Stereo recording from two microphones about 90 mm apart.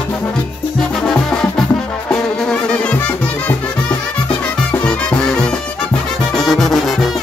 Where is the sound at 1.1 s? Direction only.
5° left (ahead or behind).